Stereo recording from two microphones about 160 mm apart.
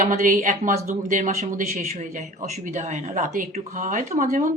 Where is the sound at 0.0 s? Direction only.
55° right (ahead or behind).